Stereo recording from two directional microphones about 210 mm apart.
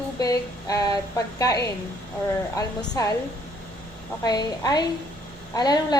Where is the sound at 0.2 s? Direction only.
15° left (ahead or behind).